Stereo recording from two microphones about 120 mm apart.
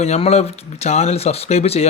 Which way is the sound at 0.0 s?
60° left (ahead or behind).